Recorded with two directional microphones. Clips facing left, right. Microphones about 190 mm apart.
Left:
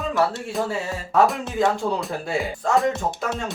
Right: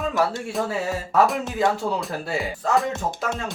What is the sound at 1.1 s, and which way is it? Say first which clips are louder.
Speech: left 1 dB; centre (ahead or behind).